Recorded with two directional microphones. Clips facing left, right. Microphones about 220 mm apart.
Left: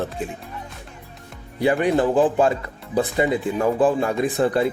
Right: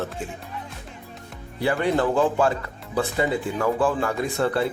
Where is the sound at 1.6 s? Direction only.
15° left (ahead or behind).